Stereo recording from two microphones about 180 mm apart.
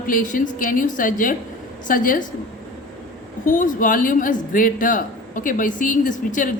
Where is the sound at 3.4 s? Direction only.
45° left (ahead or behind).